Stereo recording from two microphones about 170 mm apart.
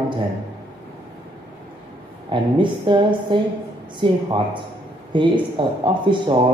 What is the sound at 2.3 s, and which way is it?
A woman's voice, 30° right (ahead or behind).